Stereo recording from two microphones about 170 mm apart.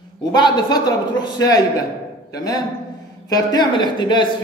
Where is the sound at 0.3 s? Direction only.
25° left (ahead or behind).